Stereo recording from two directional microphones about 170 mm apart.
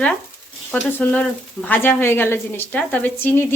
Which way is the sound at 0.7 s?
10° left (ahead or behind).